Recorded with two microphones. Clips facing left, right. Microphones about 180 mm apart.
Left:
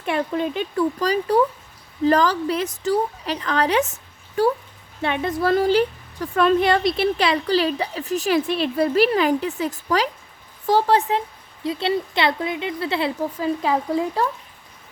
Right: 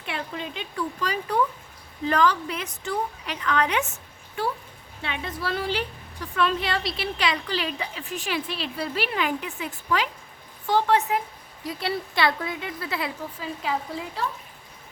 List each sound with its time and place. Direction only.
0.0 s a woman's voice: 45° left (ahead or behind)
5.0 s a woman's voice: 50° left (ahead or behind); by 13.1 s 30° left (ahead or behind)
13.4 s a woman's voice: 40° left (ahead or behind)